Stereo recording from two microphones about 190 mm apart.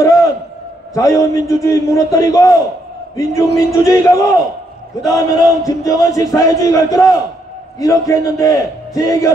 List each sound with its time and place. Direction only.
0.0 s a sound: 15° left (ahead or behind)
0.9 s a man's voice: 15° left (ahead or behind)
3.7 s a man's voice: 15° left (ahead or behind)